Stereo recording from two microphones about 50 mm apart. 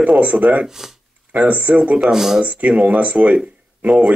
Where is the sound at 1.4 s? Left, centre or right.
Right.